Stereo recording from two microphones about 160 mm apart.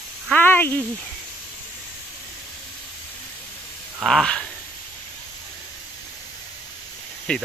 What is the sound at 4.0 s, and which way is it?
Speech, 5° left (ahead or behind).